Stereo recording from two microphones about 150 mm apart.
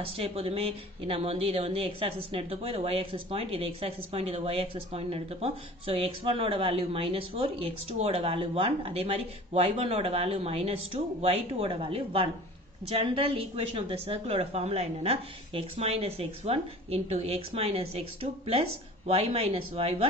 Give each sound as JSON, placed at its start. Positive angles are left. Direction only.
{"t": 0.0, "sound": "a woman's voice", "side_deg": -40}